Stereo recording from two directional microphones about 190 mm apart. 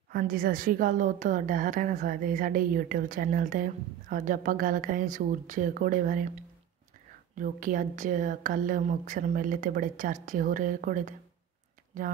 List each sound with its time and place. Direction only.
0.1 s a woman's voice: 50° right (ahead or behind)
7.3 s a woman's voice: 45° right (ahead or behind)